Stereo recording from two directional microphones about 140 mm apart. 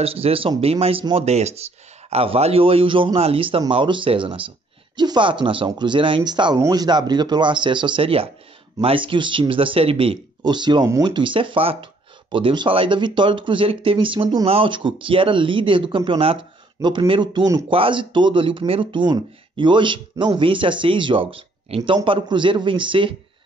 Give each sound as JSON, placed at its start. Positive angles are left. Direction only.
{"t": 0.0, "sound": "speech", "side_deg": -45}
{"t": 17.6, "sound": "speech", "side_deg": -40}